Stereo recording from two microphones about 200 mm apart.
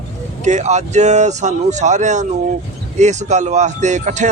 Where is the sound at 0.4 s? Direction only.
35° right (ahead or behind).